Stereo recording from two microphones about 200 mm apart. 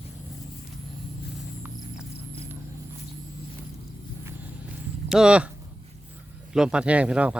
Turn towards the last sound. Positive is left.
turn(degrees=-5)  # may be behind; listen again after turning